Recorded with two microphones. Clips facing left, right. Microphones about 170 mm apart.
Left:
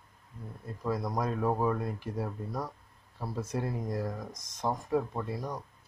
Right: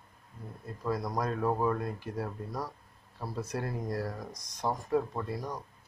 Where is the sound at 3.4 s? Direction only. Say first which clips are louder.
Left 1 dB; 25° left (ahead or behind).